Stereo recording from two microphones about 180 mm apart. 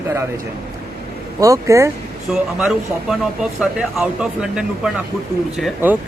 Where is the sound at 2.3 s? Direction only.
Centre (ahead or behind).